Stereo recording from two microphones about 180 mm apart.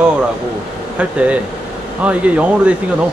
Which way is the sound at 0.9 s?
5° right (ahead or behind).